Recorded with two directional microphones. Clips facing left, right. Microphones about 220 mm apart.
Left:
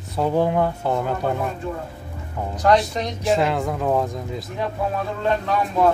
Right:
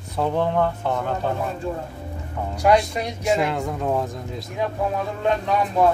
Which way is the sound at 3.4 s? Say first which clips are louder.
Left 2 dB; centre (ahead or behind).